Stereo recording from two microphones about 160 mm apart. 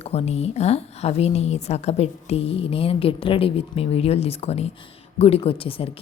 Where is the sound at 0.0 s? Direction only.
40° left (ahead or behind).